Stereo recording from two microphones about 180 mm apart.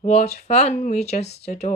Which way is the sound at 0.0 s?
40° left (ahead or behind).